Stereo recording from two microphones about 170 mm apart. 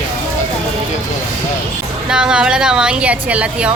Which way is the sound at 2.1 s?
5° right (ahead or behind).